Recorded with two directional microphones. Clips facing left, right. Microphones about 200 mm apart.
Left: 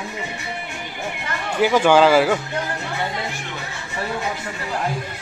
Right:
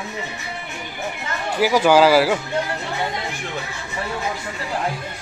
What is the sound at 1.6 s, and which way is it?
Speech, 5° right (ahead or behind).